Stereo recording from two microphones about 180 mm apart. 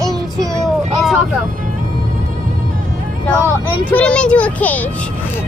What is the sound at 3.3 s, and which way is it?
A child's voice, 10° left (ahead or behind).